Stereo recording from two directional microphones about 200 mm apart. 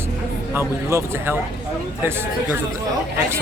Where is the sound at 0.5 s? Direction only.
10° right (ahead or behind).